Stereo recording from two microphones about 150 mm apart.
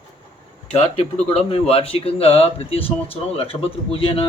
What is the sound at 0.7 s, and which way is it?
Speech, 45° left (ahead or behind).